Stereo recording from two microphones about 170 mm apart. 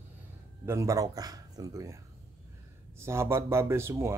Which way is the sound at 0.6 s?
20° right (ahead or behind).